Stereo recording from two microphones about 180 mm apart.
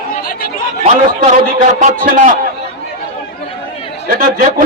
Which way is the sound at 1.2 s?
40° right (ahead or behind).